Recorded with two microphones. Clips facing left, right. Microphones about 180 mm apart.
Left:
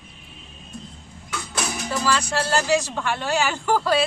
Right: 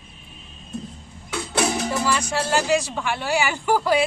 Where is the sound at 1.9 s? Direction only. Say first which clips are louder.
Even; 20° right (ahead or behind).